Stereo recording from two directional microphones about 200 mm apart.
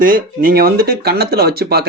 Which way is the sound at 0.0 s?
45° right (ahead or behind).